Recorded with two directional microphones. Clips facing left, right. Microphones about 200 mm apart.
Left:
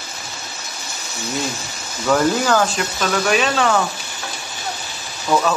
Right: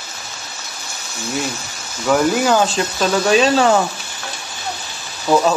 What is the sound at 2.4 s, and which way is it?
Speech, 20° right (ahead or behind).